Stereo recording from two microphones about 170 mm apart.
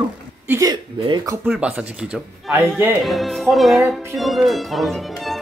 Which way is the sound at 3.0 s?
Centre (ahead or behind).